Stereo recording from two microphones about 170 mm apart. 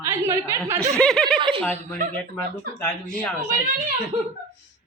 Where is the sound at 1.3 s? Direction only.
30° right (ahead or behind).